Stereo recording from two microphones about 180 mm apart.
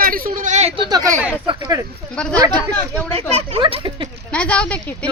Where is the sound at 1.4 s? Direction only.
25° right (ahead or behind).